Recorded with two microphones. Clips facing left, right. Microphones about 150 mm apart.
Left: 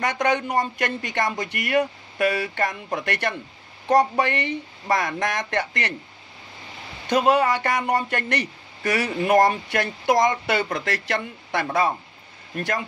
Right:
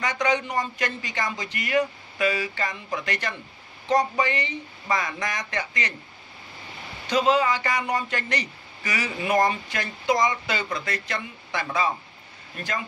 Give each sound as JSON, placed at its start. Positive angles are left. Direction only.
{"t": 0.0, "sound": "speech", "side_deg": 55}
{"t": 7.1, "sound": "speech", "side_deg": 60}